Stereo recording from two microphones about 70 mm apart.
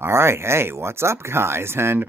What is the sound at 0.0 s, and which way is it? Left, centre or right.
Speech, right.